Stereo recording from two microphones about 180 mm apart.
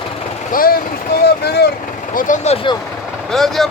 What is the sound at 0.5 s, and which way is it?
Speech, 55° left (ahead or behind).